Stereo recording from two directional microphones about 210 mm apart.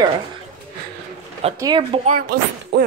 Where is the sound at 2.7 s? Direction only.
50° right (ahead or behind).